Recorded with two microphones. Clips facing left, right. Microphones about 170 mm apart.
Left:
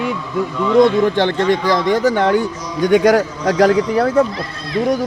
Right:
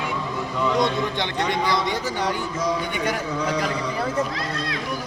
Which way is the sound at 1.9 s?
60° left (ahead or behind).